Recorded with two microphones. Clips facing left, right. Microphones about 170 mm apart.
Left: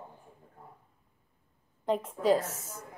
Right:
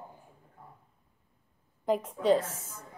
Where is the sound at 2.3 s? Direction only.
30° right (ahead or behind).